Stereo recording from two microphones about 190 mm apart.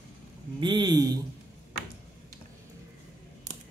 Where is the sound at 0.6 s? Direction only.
25° right (ahead or behind).